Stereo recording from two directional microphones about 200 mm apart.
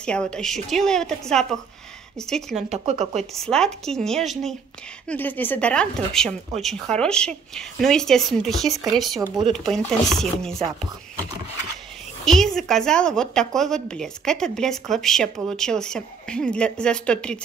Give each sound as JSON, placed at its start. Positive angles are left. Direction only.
{"t": 0.0, "sound": "a woman's voice", "side_deg": 5}
{"t": 2.7, "sound": "speech", "side_deg": -35}
{"t": 3.3, "sound": "a woman's voice", "side_deg": 5}
{"t": 12.3, "sound": "a woman's voice", "side_deg": 0}